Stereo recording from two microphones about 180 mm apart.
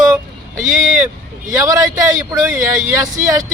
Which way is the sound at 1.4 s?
15° right (ahead or behind).